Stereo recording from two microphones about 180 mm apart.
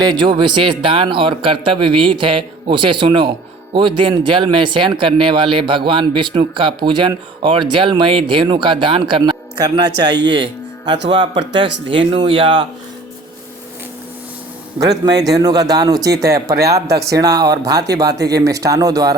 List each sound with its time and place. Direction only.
0.0 s a man's voice: 25° right (ahead or behind)
14.8 s a man's voice: 20° right (ahead or behind)
18.1 s speech: 65° right (ahead or behind)
18.3 s a man's voice: 20° right (ahead or behind)